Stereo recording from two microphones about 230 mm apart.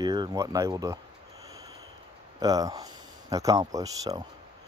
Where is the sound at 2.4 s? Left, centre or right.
Centre.